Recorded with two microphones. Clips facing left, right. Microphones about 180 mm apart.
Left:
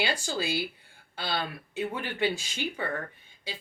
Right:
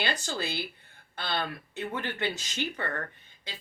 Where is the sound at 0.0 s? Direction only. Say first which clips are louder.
Left 2 dB; 10° left (ahead or behind).